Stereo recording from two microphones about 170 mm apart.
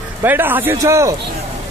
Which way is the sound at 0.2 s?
10° right (ahead or behind).